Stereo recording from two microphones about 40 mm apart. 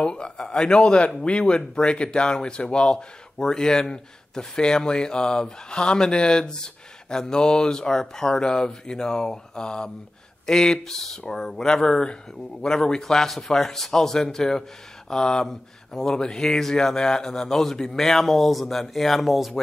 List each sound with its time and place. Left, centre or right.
0.0 s speech: left; by 19.6 s centre